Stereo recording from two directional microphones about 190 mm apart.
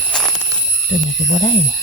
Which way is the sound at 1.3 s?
25° left (ahead or behind).